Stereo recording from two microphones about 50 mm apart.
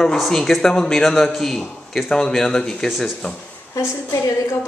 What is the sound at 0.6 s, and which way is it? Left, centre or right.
A man's voice, centre.